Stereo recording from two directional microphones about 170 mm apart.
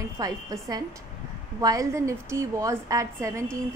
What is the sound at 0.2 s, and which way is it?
A woman's voice, 20° right (ahead or behind).